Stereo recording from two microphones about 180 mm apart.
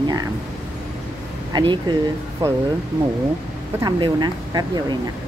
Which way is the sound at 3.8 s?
25° right (ahead or behind).